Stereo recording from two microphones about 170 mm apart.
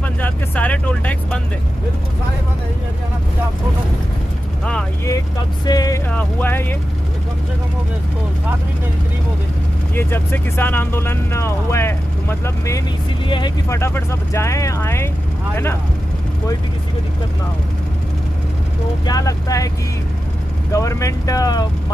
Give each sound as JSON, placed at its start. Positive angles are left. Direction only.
{"t": 0.2, "sound": "speech", "side_deg": 10}
{"t": 5.7, "sound": "speech", "side_deg": 20}
{"t": 6.0, "sound": "speech", "side_deg": 10}
{"t": 9.9, "sound": "speech", "side_deg": 15}
{"t": 13.7, "sound": "speech", "side_deg": 15}
{"t": 19.0, "sound": "speech", "side_deg": 20}
{"t": 20.7, "sound": "speech", "side_deg": 20}